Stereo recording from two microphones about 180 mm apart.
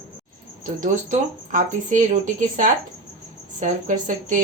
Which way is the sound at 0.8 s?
45° right (ahead or behind).